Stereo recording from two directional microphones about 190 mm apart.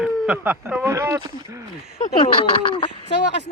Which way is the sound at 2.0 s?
25° left (ahead or behind).